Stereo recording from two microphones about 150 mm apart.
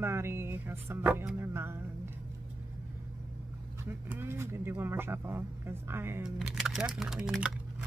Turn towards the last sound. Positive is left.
turn(degrees=-5)  # may be behind; listen again after turning